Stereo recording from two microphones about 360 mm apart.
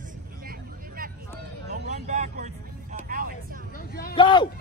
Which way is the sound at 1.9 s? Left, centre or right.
Centre.